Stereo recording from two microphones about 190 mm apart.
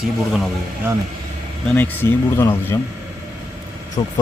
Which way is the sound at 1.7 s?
10° left (ahead or behind).